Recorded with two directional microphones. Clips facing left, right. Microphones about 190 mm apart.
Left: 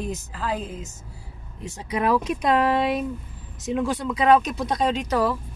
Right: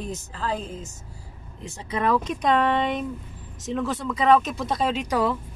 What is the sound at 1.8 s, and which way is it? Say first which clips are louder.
Speech: left 1 dB; 10° left (ahead or behind).